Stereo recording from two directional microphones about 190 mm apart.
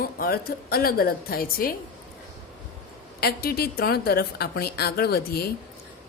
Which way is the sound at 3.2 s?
55° left (ahead or behind).